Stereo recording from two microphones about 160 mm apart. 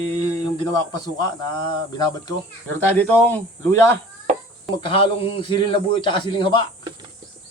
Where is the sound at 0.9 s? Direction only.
25° left (ahead or behind).